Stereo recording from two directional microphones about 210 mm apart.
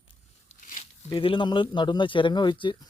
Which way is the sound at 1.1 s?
25° left (ahead or behind).